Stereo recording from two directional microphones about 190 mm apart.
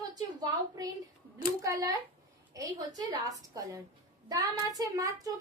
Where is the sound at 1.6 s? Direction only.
15° right (ahead or behind).